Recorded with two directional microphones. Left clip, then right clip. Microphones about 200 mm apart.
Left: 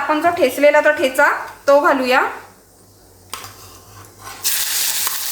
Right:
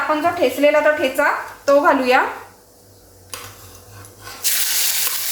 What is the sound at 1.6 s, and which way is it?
Speech, 10° left (ahead or behind).